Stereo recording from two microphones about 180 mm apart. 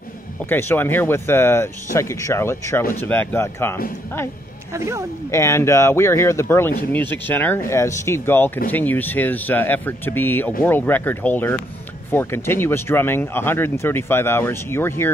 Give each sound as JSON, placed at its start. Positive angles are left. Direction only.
{"t": 0.5, "sound": "speech", "side_deg": 10}
{"t": 4.7, "sound": "speech", "side_deg": -15}
{"t": 5.3, "sound": "speech", "side_deg": 15}